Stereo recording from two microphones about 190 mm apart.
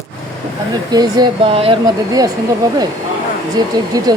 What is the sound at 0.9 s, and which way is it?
Speech, 20° right (ahead or behind).